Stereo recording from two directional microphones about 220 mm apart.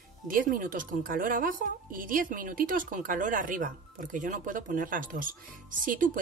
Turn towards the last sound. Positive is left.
turn(degrees=-40)  # may be behind; listen again after turning